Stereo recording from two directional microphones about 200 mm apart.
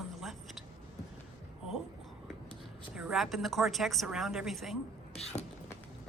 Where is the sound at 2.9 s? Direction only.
5° right (ahead or behind).